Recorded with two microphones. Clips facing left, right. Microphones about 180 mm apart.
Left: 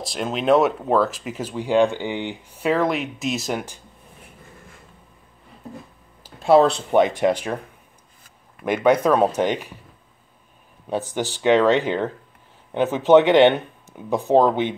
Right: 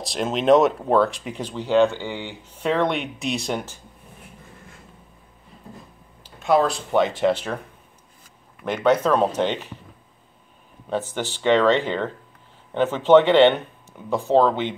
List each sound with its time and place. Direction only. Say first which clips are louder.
0.0 s speech: right 1 dB; centre (ahead or behind)
6.4 s speech: left 4 dB; 30° left (ahead or behind)
6.9 s speech: left 2 dB; 15° left (ahead or behind)
8.6 s speech: left 2 dB; 10° left (ahead or behind)
10.9 s speech: left 1 dB; 15° left (ahead or behind)